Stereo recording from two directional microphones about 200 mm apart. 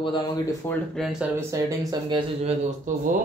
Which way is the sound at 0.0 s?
25° left (ahead or behind).